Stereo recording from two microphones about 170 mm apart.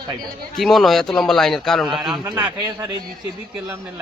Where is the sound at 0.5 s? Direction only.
Centre (ahead or behind).